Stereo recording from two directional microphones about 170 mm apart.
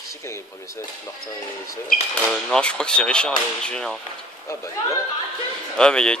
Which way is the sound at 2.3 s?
5° left (ahead or behind).